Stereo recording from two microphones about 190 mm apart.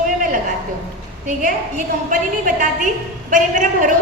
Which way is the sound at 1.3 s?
45° right (ahead or behind).